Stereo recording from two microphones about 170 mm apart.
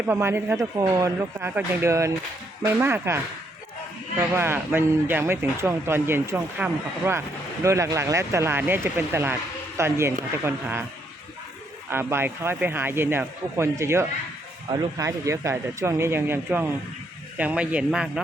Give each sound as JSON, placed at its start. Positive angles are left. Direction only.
{"t": 0.0, "sound": "speech", "side_deg": -15}
{"t": 4.2, "sound": "speech", "side_deg": -15}
{"t": 11.9, "sound": "speech", "side_deg": -15}